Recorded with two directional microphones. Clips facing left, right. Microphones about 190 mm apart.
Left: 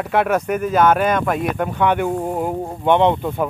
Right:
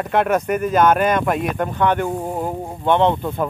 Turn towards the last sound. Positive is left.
turn(degrees=10)  # may be behind; listen again after turning